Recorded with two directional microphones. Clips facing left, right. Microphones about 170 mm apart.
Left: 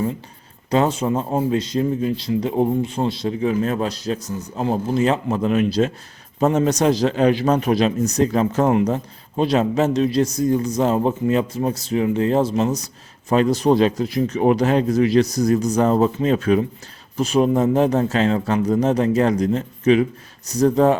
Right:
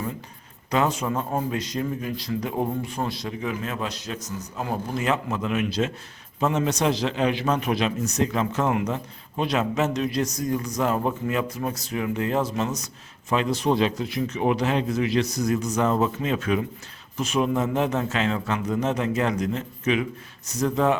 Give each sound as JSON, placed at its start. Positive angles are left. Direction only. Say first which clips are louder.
{"t": 0.7, "sound": "a man's voice", "louder": "left 5 dB", "side_deg": 30}